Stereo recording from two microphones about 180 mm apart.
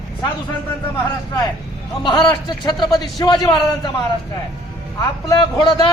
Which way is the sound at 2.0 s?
25° left (ahead or behind).